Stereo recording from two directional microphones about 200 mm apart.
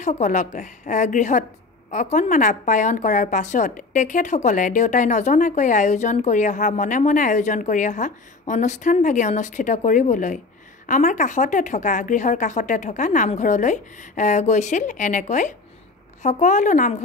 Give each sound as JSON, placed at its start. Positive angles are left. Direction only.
{"t": 0.0, "sound": "a woman's voice", "side_deg": 35}